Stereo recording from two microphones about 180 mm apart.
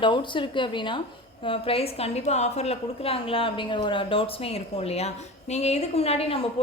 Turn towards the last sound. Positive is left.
turn(degrees=35)  # may be behind; listen again after turning